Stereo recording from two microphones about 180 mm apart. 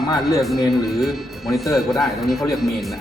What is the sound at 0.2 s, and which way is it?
Speech, centre (ahead or behind).